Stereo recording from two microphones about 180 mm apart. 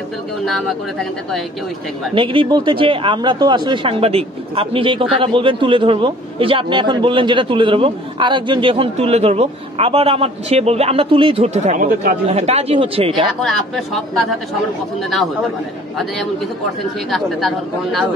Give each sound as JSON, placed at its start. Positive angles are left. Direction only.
{"t": 2.1, "sound": "speech", "side_deg": -30}
{"t": 12.3, "sound": "speech", "side_deg": -35}
{"t": 13.4, "sound": "speech", "side_deg": 0}
{"t": 17.1, "sound": "speech", "side_deg": 0}